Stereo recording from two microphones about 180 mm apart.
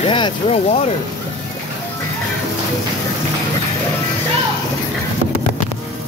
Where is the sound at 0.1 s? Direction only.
30° left (ahead or behind).